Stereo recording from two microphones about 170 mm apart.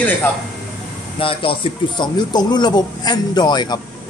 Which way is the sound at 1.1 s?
30° left (ahead or behind).